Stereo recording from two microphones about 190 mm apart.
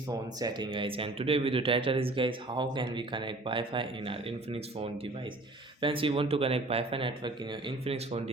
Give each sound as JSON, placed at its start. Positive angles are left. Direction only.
{"t": 0.1, "sound": "speech", "side_deg": -20}